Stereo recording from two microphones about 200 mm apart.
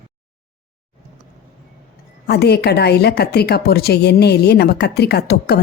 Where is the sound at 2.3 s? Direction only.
55° left (ahead or behind).